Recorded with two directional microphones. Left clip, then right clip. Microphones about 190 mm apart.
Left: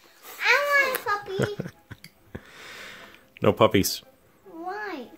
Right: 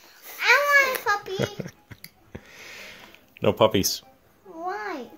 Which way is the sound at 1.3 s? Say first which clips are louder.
Left 1 dB; 15° left (ahead or behind).